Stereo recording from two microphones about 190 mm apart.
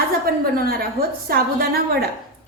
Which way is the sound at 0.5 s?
50° right (ahead or behind).